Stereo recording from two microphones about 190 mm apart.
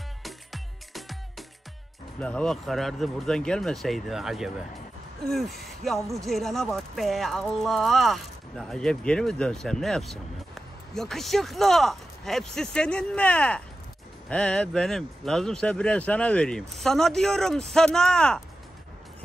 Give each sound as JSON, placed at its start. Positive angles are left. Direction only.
{"t": 0.2, "sound": "music", "side_deg": 0}
{"t": 2.1, "sound": "speech", "side_deg": 5}